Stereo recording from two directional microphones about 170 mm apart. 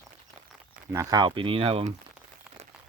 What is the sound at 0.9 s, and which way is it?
Speech, 20° right (ahead or behind).